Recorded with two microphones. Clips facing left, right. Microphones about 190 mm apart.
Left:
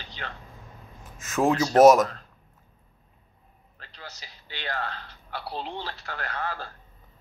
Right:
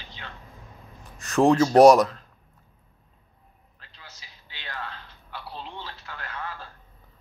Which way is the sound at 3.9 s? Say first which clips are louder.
Left 6 dB; 75° left (ahead or behind).